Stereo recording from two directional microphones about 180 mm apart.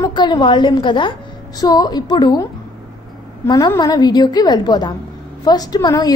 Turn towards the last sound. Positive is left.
turn(degrees=20)  # may be behind; listen again after turning